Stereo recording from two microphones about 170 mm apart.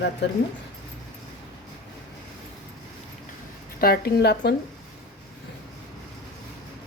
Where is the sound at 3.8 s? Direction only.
70° left (ahead or behind).